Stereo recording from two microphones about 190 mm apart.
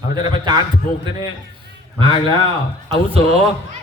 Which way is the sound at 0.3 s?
25° right (ahead or behind).